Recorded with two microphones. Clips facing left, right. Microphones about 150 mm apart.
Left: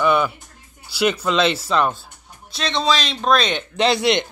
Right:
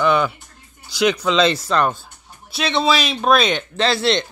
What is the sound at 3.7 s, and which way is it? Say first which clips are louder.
Male singing: left 2 dB; 15° left (ahead or behind).